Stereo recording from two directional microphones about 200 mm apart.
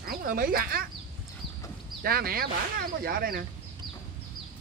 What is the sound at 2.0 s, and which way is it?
Speech, 50° right (ahead or behind).